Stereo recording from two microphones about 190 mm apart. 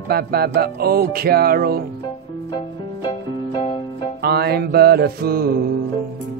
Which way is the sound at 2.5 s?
25° left (ahead or behind).